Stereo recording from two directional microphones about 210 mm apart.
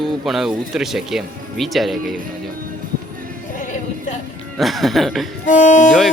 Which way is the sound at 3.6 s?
35° left (ahead or behind).